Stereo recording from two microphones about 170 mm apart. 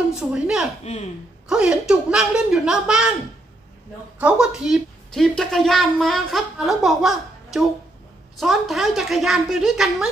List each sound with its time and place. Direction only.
0.1 s a woman's voice: 5° right (ahead or behind)
4.2 s a woman's voice: 5° right (ahead or behind)